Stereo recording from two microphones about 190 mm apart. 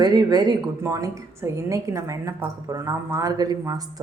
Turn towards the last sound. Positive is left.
turn(degrees=-20)  # may be behind; listen again after turning